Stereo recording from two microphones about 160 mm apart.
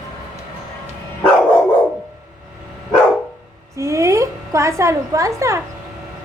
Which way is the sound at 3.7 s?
20° right (ahead or behind).